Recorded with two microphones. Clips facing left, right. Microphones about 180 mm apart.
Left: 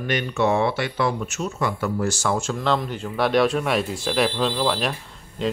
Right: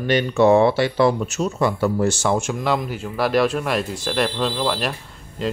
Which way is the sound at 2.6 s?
10° right (ahead or behind).